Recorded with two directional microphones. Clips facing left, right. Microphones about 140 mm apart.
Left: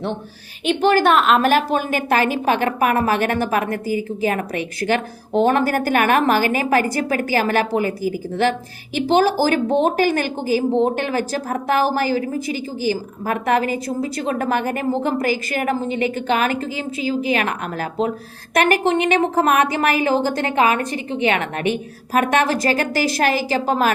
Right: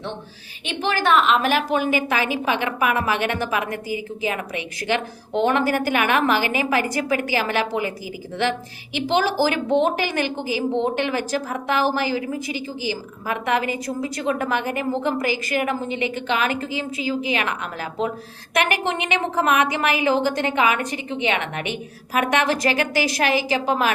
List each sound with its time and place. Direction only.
0.6 s a woman's voice: 55° left (ahead or behind)